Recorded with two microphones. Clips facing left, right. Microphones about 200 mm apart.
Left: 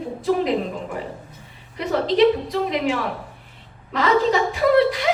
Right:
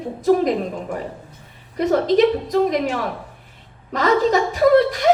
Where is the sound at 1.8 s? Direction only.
45° right (ahead or behind).